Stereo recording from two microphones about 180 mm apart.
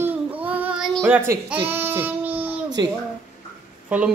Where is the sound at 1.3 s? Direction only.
15° right (ahead or behind).